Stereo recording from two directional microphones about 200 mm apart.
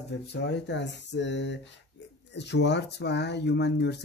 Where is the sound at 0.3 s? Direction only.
60° left (ahead or behind).